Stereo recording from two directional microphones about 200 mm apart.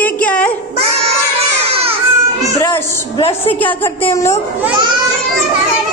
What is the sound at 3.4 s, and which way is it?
Speech, 10° left (ahead or behind).